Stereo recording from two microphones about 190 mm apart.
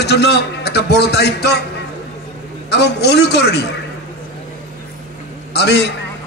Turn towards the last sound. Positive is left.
turn(degrees=60)  # may be behind; listen again after turning